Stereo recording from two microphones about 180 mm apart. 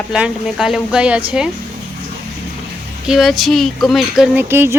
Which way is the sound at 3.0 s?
Centre (ahead or behind).